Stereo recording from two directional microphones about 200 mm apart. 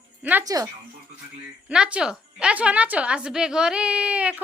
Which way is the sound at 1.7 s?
5° right (ahead or behind).